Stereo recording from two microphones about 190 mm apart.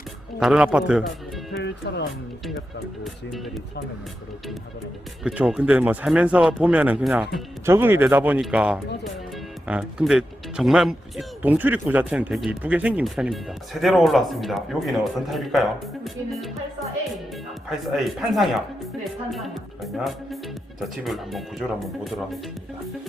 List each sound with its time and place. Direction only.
0.3 s speech: 5° right (ahead or behind)
1.5 s music: 65° left (ahead or behind)
2.6 s speech: centre (ahead or behind)
5.2 s speech: 5° right (ahead or behind)
17.7 s speech: centre (ahead or behind)